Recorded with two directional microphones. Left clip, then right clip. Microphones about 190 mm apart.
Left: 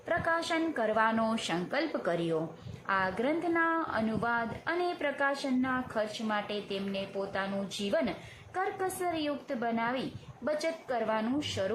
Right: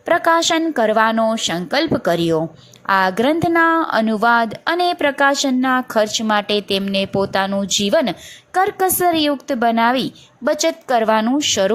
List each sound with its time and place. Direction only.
0.0 s a woman's voice: 40° right (ahead or behind)
1.2 s a woman's voice: 25° right (ahead or behind); by 11.7 s 45° right (ahead or behind)